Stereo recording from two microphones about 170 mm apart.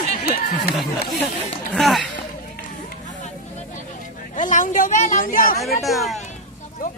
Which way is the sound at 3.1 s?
45° left (ahead or behind).